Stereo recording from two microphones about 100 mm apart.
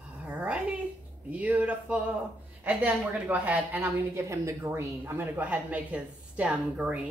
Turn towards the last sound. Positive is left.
turn(degrees=-10)  # may be behind; listen again after turning